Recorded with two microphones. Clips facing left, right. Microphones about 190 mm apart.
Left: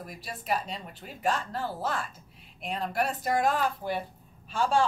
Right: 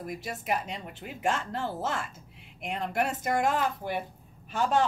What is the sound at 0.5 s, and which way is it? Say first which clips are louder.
A woman's voice: left 1 dB; 20° right (ahead or behind).